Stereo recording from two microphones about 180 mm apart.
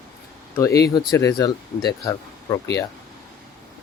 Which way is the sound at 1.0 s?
20° left (ahead or behind).